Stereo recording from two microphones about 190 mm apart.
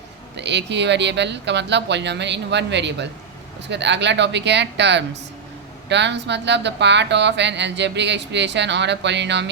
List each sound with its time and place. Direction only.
0.3 s speech: 65° right (ahead or behind)